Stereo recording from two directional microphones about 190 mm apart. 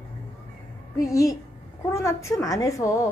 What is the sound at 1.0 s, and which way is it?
A woman's voice, 15° left (ahead or behind).